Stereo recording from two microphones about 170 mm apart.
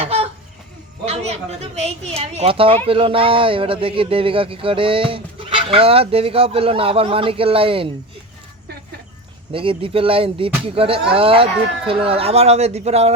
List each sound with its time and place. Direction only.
0.0 s a sound: 35° right (ahead or behind)
1.0 s a woman's voice: 40° right (ahead or behind)
9.5 s a woman's voice: 30° right (ahead or behind)